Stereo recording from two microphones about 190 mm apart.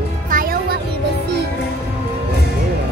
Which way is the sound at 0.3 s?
50° right (ahead or behind).